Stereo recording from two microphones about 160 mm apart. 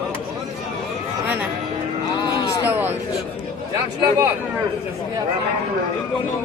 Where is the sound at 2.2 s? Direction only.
25° left (ahead or behind).